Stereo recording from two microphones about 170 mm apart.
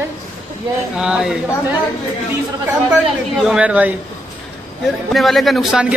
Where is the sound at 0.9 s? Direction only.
5° right (ahead or behind).